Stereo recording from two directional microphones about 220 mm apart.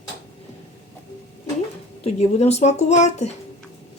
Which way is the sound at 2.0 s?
30° left (ahead or behind).